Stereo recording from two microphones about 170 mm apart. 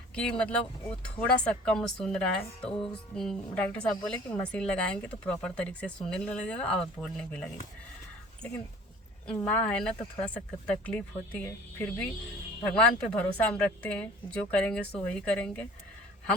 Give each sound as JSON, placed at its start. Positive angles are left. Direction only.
{"t": 0.1, "sound": "a woman's voice", "side_deg": 5}
{"t": 2.6, "sound": "music", "side_deg": 30}
{"t": 2.9, "sound": "a woman's voice", "side_deg": 5}
{"t": 9.2, "sound": "a woman's voice", "side_deg": 5}